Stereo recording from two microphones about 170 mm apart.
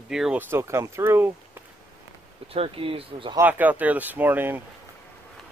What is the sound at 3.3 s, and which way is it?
Speech, 10° right (ahead or behind).